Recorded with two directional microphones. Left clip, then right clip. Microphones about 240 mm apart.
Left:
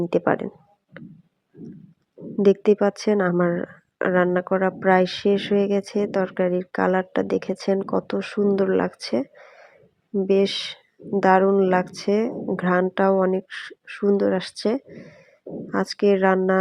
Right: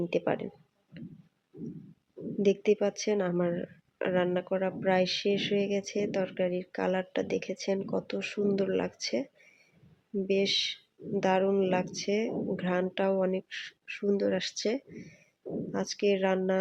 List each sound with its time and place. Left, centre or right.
0.0 s speech: left
2.4 s speech: left
10.2 s speech: left